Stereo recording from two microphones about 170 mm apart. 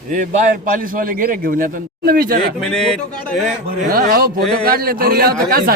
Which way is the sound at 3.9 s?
60° right (ahead or behind).